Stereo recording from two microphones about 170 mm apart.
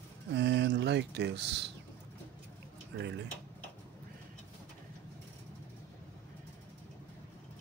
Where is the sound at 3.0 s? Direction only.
90° right.